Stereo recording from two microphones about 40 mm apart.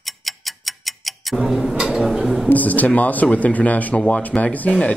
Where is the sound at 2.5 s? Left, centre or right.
Left.